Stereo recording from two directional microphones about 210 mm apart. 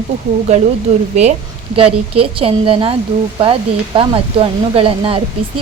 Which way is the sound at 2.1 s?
25° right (ahead or behind).